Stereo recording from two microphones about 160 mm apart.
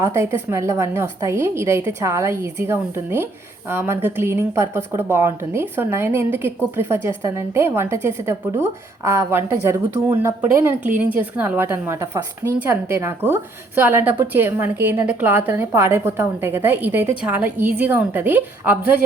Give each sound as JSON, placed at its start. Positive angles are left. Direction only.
{"t": 0.0, "sound": "a woman's voice", "side_deg": -15}